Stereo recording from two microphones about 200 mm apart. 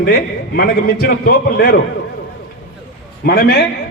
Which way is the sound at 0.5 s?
50° left (ahead or behind).